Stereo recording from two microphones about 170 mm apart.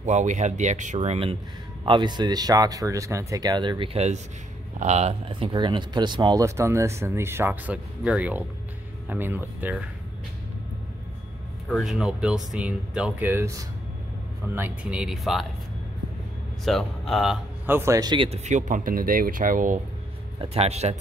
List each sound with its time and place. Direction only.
0.0 s speech: 45° right (ahead or behind)
1.9 s speech: 25° right (ahead or behind); by 9.8 s 10° right (ahead or behind)
11.7 s speech: centre (ahead or behind)
16.6 s speech: centre (ahead or behind)
17.6 s speech: 15° right (ahead or behind); by 18.4 s 30° right (ahead or behind)
18.4 s speech: 45° right (ahead or behind)
20.3 s speech: 35° right (ahead or behind)